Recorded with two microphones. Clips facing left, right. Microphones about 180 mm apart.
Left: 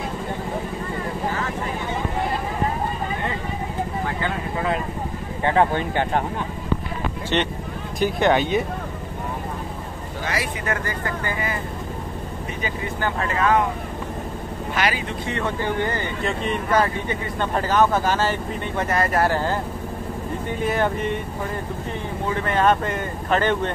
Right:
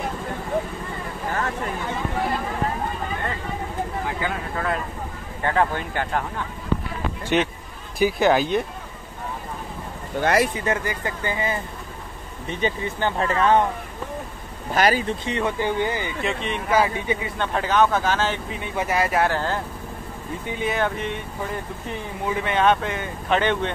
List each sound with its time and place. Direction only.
5.4 s speech: 25° left (ahead or behind)
7.3 s speech: 5° right (ahead or behind)
10.2 s speech: 55° right (ahead or behind)
10.6 s speech: 20° right (ahead or behind)
12.6 s speech: 30° right (ahead or behind)
14.7 s speech: 40° right (ahead or behind)
15.2 s speech: 15° right (ahead or behind)
17.4 s speech: 5° left (ahead or behind)
18.8 s speech: 5° right (ahead or behind)
19.3 s speech: 10° left (ahead or behind)
20.6 s speech: 5° left (ahead or behind)
22.3 s speech: 5° right (ahead or behind)